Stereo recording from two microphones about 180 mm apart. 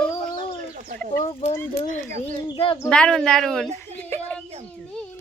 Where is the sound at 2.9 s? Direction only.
5° left (ahead or behind).